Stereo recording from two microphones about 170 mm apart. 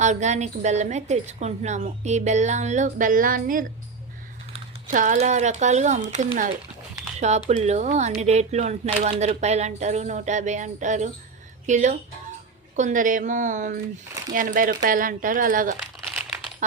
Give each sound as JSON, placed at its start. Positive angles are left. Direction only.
{"t": 0.0, "sound": "a woman's voice", "side_deg": -45}